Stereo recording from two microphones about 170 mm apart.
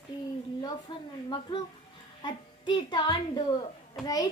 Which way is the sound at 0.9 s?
30° left (ahead or behind).